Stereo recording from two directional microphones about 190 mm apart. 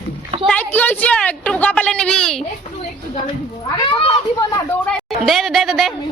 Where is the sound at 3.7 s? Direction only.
25° left (ahead or behind).